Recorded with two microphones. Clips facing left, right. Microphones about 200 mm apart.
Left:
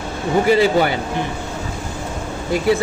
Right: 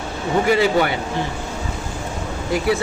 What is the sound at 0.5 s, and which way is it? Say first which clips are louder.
Speech: left 2 dB; 30° left (ahead or behind).